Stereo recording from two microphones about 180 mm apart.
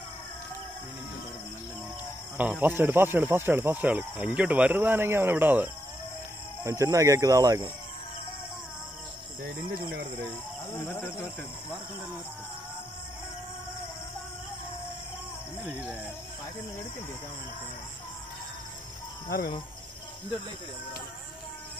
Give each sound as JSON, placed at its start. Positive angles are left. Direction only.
{"t": 2.3, "sound": "speech", "side_deg": -10}
{"t": 10.9, "sound": "speech", "side_deg": 10}
{"t": 15.6, "sound": "speech", "side_deg": -5}
{"t": 19.2, "sound": "speech", "side_deg": 55}